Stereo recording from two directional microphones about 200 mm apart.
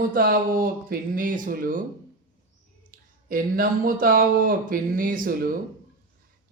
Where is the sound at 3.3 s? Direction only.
45° right (ahead or behind).